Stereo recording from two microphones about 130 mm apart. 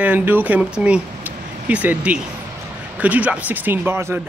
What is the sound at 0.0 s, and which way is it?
Speech, 15° right (ahead or behind).